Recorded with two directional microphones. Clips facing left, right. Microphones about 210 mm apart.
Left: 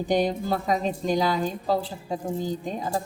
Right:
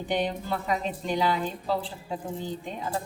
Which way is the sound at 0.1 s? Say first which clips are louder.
Left 4 dB; 40° left (ahead or behind).